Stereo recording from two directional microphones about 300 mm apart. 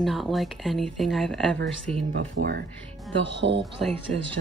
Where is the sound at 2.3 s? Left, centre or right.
Right.